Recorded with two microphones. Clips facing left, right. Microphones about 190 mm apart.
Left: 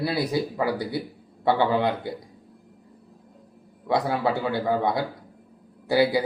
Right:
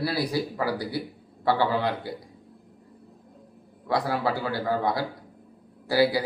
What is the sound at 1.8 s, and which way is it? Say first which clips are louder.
Speech: left 3 dB; 20° left (ahead or behind).